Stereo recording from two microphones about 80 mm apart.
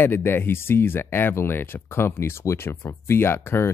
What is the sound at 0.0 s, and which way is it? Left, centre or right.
Speech, left.